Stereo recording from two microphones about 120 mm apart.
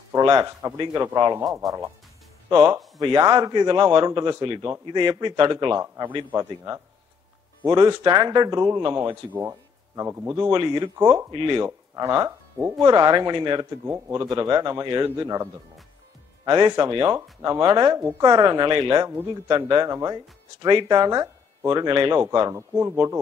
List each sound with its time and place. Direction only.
0.2 s a man's voice: 35° right (ahead or behind)
1.4 s speech: centre (ahead or behind)
2.5 s a man's voice: 35° right (ahead or behind)
6.3 s a man's voice: 30° right (ahead or behind)
9.0 s speech: 20° right (ahead or behind)
9.5 s music: 25° right (ahead or behind)
10.3 s speech: 40° right (ahead or behind)
11.0 s a man's voice: 20° right (ahead or behind)
11.2 s a man's voice: 45° right (ahead or behind)
11.9 s speech: 30° right (ahead or behind)
12.8 s a man's voice: 35° right (ahead or behind)
13.8 s a man's voice: 20° right (ahead or behind); by 15.0 s 40° right (ahead or behind)
15.1 s a man's voice: 25° right (ahead or behind)
22.3 s a man's voice: 30° right (ahead or behind)